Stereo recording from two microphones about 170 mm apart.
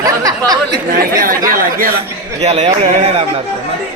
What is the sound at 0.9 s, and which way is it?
Speech, 55° right (ahead or behind).